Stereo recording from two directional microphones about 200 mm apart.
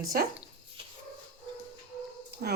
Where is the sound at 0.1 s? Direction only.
45° right (ahead or behind).